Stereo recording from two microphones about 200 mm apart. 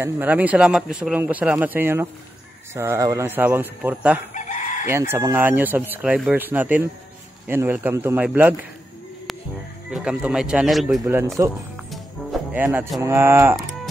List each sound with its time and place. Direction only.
0.0 s speech: 10° right (ahead or behind)
4.3 s chicken: 40° left (ahead or behind)
4.8 s speech: 10° right (ahead or behind)
9.8 s speech: 5° right (ahead or behind)
11.4 s speech: 15° right (ahead or behind)
11.7 s music: centre (ahead or behind)